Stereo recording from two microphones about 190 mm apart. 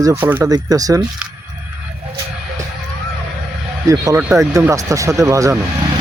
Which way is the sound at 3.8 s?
15° right (ahead or behind).